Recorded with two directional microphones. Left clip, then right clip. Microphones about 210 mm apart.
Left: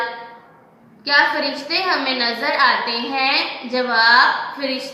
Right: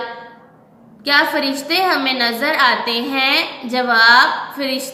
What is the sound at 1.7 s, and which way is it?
A woman's voice, 50° right (ahead or behind).